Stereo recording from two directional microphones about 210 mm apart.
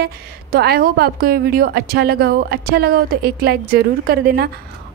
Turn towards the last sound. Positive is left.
turn(degrees=-45)  # may be behind; listen again after turning